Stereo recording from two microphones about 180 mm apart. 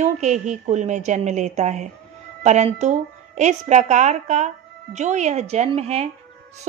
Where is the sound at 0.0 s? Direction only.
40° right (ahead or behind).